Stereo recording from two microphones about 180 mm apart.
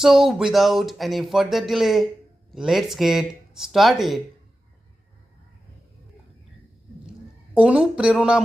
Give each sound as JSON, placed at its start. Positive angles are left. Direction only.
{"t": 0.0, "sound": "speech", "side_deg": 0}
{"t": 7.5, "sound": "speech", "side_deg": -5}